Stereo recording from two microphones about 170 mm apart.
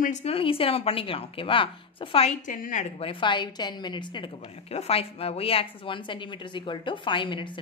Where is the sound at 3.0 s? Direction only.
30° left (ahead or behind).